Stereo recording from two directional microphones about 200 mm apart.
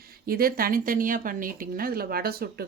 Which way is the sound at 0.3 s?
45° right (ahead or behind).